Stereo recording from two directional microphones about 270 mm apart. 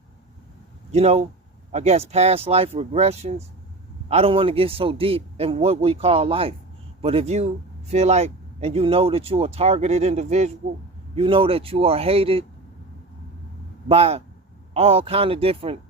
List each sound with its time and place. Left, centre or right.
0.9 s speech: right
13.8 s speech: right